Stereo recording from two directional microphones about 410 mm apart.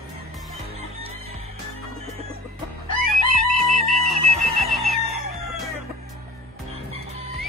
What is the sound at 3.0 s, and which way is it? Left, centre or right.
Music, centre.